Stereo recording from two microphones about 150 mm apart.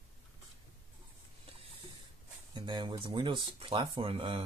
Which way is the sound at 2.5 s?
30° right (ahead or behind).